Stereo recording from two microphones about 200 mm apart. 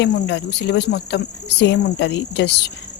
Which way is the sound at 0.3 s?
60° left (ahead or behind).